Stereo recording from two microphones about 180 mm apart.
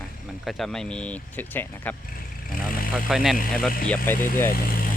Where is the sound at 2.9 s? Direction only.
Centre (ahead or behind).